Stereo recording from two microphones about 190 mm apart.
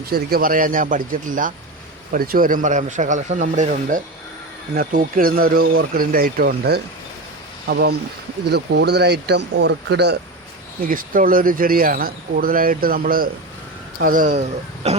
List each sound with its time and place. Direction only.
0.1 s speech: 50° right (ahead or behind)
10.8 s speech: 45° right (ahead or behind)